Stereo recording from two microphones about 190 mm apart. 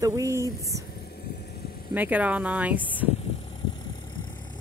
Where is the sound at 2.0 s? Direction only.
10° right (ahead or behind).